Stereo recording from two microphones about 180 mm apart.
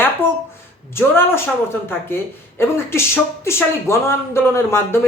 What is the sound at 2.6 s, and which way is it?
Speech, 15° left (ahead or behind).